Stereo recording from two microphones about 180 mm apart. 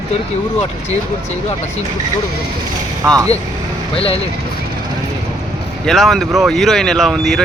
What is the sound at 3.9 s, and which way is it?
Speech, 30° left (ahead or behind).